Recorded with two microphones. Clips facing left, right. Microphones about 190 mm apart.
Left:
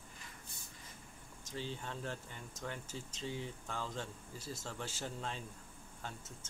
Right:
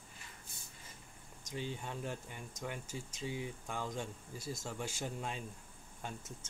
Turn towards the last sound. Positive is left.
turn(degrees=-15)  # may be behind; listen again after turning